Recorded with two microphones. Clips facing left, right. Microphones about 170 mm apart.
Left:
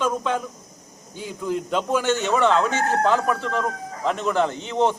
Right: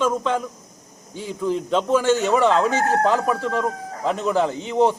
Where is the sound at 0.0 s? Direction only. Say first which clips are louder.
Right 2 dB; 5° left (ahead or behind).